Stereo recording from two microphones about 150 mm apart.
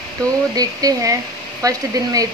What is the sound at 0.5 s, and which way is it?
Speech, 25° right (ahead or behind).